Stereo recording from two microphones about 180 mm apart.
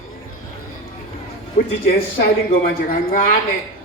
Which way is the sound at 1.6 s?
40° left (ahead or behind).